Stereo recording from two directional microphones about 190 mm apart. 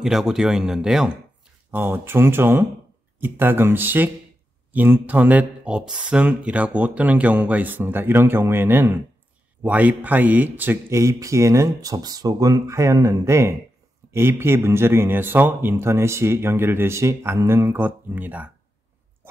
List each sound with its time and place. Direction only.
0.0 s speech: centre (ahead or behind)